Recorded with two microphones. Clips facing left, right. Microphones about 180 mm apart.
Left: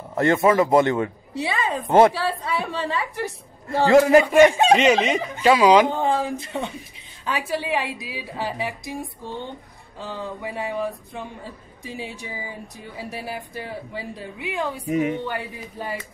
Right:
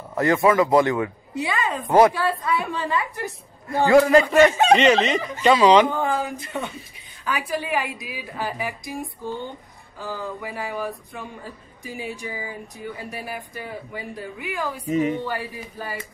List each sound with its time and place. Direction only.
0.1 s a woman's voice: 25° left (ahead or behind)
3.7 s speech: 25° left (ahead or behind); by 5.9 s 10° left (ahead or behind)
5.9 s a woman's voice: 25° left (ahead or behind)
9.9 s a woman's voice: 25° left (ahead or behind)
13.9 s a woman's voice: 25° left (ahead or behind)
14.9 s speech: 10° left (ahead or behind)